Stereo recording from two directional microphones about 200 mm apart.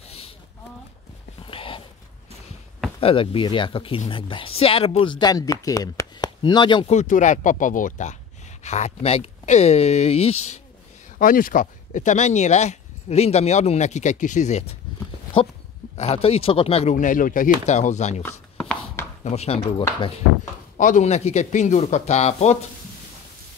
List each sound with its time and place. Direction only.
1.4 s a sound: 25° left (ahead or behind)
3.0 s speech: 25° left (ahead or behind)
11.1 s speech: 45° left (ahead or behind)
16.0 s speech: 30° left (ahead or behind)
18.2 s chopping: 10° left (ahead or behind)
19.2 s speech: 30° left (ahead or behind)
20.7 s speech: 40° left (ahead or behind)